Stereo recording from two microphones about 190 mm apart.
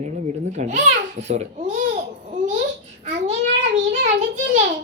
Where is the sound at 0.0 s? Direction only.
40° right (ahead or behind).